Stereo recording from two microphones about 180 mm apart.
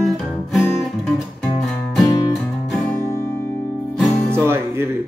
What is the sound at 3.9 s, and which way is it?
Music, centre (ahead or behind).